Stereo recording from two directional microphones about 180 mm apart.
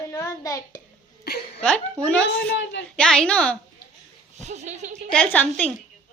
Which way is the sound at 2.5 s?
75° left (ahead or behind).